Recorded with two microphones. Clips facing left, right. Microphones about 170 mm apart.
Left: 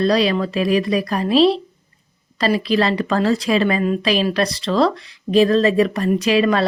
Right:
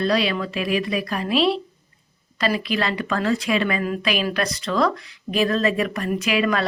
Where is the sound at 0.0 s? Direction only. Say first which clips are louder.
Left 5 dB; 35° left (ahead or behind).